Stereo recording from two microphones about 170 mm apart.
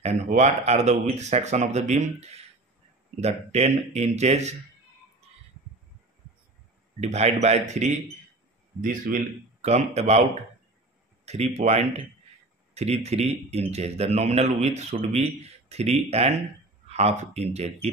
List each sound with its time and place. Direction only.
0.0 s speech: 40° right (ahead or behind)
7.0 s speech: 40° right (ahead or behind)
8.8 s speech: 55° right (ahead or behind)
9.6 s speech: 40° right (ahead or behind)
11.2 s speech: 40° right (ahead or behind)